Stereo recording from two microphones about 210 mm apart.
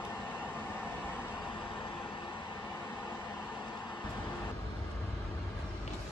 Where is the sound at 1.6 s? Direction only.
20° left (ahead or behind).